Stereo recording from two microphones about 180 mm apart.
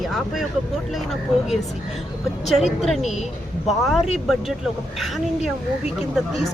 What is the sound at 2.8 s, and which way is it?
Speech, centre (ahead or behind).